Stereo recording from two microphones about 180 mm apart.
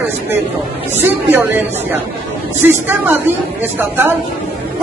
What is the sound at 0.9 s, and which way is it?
Speech, 10° right (ahead or behind).